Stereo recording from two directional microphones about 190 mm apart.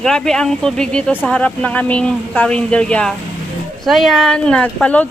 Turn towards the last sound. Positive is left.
turn(degrees=5)  # may be behind; listen again after turning